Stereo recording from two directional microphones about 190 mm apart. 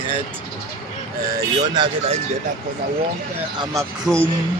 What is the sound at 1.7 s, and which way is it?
Speech, 25° right (ahead or behind).